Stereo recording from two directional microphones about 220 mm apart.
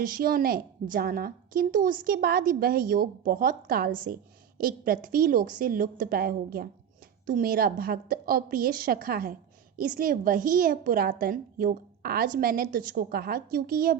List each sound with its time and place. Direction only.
0.0 s a woman's voice: 40° right (ahead or behind)